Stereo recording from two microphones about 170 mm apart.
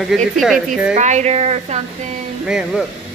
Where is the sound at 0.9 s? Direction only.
40° right (ahead or behind).